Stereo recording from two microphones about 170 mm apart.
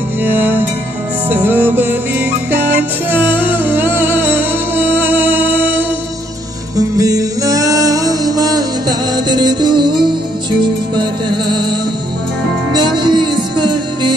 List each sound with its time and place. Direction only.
0.2 s music: 10° right (ahead or behind); by 11.6 s 25° right (ahead or behind)
12.7 s music: 25° right (ahead or behind)